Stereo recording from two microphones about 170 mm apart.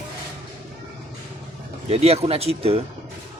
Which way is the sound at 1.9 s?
35° right (ahead or behind).